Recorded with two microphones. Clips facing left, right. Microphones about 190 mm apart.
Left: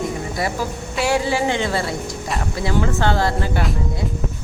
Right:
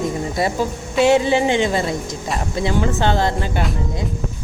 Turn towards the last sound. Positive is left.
turn(degrees=-20)  # may be behind; listen again after turning